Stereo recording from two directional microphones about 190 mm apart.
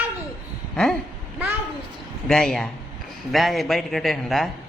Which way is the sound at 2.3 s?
Centre (ahead or behind).